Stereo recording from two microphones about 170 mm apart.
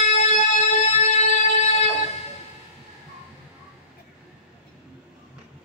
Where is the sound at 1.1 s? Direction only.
40° left (ahead or behind).